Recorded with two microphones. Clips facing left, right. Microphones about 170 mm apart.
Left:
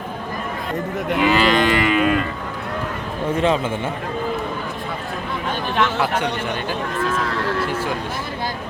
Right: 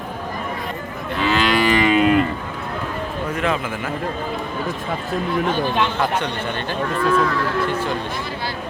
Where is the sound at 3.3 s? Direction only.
30° left (ahead or behind).